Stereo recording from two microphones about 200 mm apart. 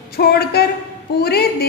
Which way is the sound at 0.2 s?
50° left (ahead or behind).